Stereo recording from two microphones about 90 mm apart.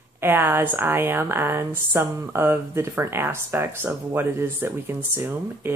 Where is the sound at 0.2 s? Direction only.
25° right (ahead or behind).